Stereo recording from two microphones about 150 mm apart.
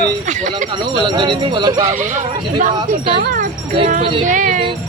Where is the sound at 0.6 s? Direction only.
30° right (ahead or behind).